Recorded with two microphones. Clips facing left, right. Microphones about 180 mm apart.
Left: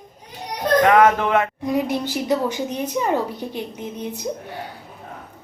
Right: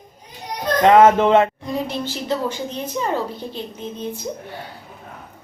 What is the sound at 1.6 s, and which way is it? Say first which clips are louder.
A woman's voice: left 3 dB; 15° left (ahead or behind).